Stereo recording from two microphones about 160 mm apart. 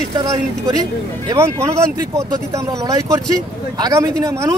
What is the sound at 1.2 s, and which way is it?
Speech, 15° right (ahead or behind).